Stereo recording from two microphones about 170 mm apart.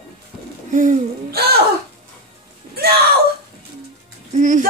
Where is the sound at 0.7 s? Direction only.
45° right (ahead or behind).